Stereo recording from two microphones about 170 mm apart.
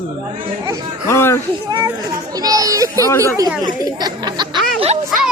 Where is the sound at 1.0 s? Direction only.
15° left (ahead or behind).